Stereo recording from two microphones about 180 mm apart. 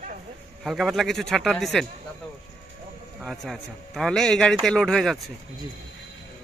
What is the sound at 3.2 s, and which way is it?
A man's voice, centre (ahead or behind).